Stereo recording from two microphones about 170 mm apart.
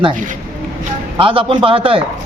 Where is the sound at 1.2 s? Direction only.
30° right (ahead or behind).